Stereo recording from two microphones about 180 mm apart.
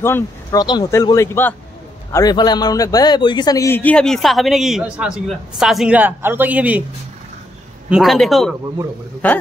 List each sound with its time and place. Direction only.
0.0 s a man's voice: 15° left (ahead or behind); by 6.8 s 10° right (ahead or behind)
7.9 s a man's voice: centre (ahead or behind)